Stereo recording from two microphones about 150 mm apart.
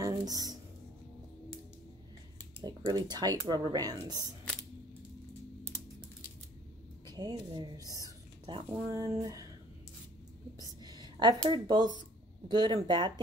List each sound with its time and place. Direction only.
0.0 s a sound: 25° right (ahead or behind)
2.6 s speech: 30° right (ahead or behind)
7.1 s speech: 25° right (ahead or behind)
10.6 s whispering: 25° right (ahead or behind)
11.4 s speech: 30° right (ahead or behind)